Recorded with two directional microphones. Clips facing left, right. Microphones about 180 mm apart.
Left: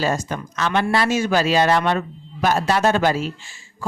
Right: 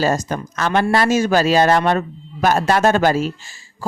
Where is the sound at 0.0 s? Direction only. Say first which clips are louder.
Right 4 dB; 40° right (ahead or behind).